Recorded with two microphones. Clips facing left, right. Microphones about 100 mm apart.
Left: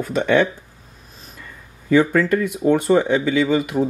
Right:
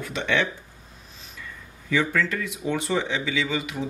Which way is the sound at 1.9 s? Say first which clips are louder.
Left 9 dB; 45° left (ahead or behind).